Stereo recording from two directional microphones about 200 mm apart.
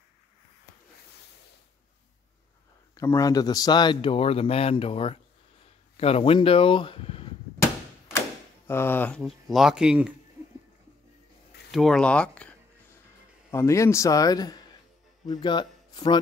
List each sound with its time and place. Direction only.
2.9 s speech: 15° left (ahead or behind)
8.6 s speech: 10° left (ahead or behind); by 10.1 s 5° right (ahead or behind)
11.7 s speech: centre (ahead or behind)
13.5 s a man's voice: 15° left (ahead or behind)